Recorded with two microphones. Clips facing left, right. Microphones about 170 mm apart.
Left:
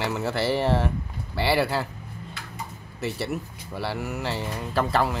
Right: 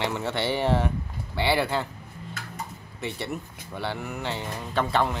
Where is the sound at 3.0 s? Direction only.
Centre (ahead or behind).